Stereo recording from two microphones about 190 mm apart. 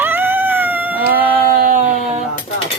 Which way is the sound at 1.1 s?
50° right (ahead or behind).